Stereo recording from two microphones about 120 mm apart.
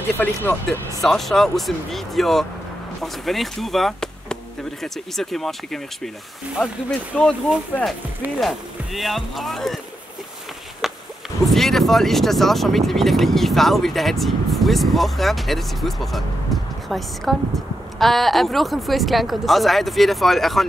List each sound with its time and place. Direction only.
0.2 s speech: 20° left (ahead or behind)
1.0 s speech: centre (ahead or behind)
10.8 s music: centre (ahead or behind)
11.4 s speech: centre (ahead or behind)
16.5 s music: centre (ahead or behind)
16.9 s speech: centre (ahead or behind)